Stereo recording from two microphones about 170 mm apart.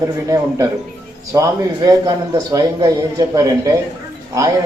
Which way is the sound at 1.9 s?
20° right (ahead or behind).